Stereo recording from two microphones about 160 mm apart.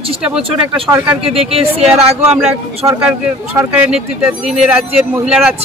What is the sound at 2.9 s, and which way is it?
Speech, 15° right (ahead or behind).